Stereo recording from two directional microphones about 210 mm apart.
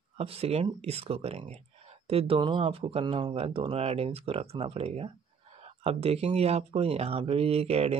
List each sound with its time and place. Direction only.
0.2 s speech: 30° right (ahead or behind)